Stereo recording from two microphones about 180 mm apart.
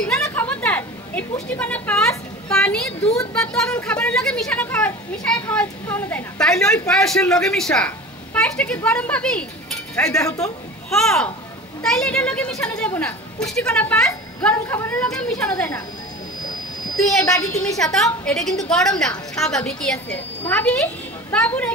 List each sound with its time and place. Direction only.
0.2 s a sound: 10° left (ahead or behind)
1.6 s a woman's voice: 5° left (ahead or behind)
10.2 s a woman's voice: 20° left (ahead or behind)
10.9 s speech: centre (ahead or behind)
16.9 s speech: centre (ahead or behind)